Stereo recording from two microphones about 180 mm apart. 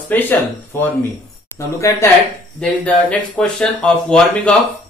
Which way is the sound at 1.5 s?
15° left (ahead or behind).